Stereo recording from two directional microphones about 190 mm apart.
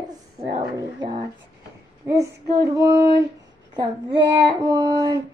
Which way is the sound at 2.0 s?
15° right (ahead or behind).